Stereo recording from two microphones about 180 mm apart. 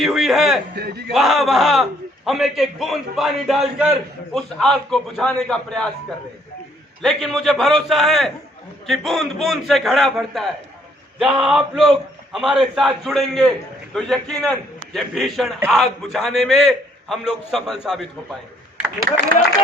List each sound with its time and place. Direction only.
0.0 s a sound: centre (ahead or behind)
0.8 s speech: 65° right (ahead or behind)
1.1 s a man's voice: centre (ahead or behind)
7.0 s a man's voice: centre (ahead or behind)